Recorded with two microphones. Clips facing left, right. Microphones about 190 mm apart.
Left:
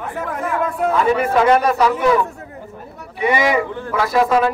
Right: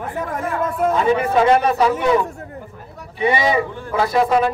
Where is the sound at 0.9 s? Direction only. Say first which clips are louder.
Left 1 dB; 20° right (ahead or behind).